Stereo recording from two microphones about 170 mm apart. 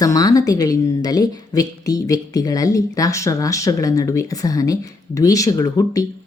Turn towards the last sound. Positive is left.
turn(degrees=20)  # may be behind; listen again after turning